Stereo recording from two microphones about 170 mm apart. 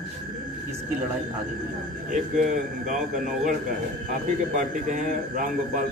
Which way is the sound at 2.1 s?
50° right (ahead or behind).